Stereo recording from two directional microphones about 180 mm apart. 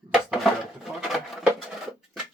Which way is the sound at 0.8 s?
Centre (ahead or behind).